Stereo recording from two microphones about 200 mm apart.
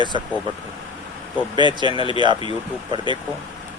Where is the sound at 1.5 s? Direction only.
20° right (ahead or behind).